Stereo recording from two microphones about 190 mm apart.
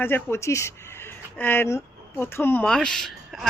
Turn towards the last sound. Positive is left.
turn(degrees=0)  # may be behind; listen again after turning